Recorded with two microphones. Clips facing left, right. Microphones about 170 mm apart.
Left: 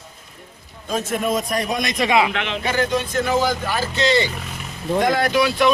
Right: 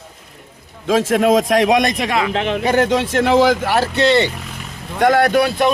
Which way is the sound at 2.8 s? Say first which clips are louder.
Right 3 dB; 80° right.